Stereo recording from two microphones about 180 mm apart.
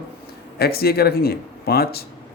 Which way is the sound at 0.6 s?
60° left (ahead or behind).